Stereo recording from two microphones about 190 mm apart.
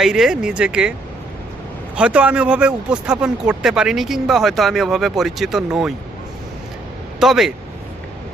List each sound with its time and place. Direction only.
0.0 s speech: 5° right (ahead or behind)
2.0 s speech: 5° right (ahead or behind)
7.2 s speech: centre (ahead or behind)